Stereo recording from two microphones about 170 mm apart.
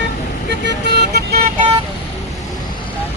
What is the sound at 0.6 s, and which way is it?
Vehicle, 85° right.